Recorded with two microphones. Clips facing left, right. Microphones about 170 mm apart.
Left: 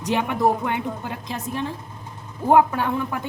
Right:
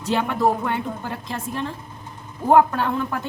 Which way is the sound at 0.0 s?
15° left (ahead or behind).